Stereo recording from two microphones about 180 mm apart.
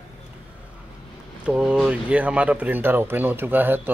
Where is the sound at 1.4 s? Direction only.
5° right (ahead or behind).